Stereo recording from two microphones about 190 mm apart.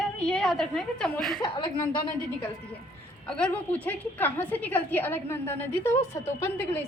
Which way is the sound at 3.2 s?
5° left (ahead or behind).